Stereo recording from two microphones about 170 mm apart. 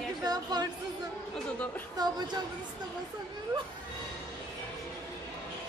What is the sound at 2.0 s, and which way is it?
Speech, 25° right (ahead or behind).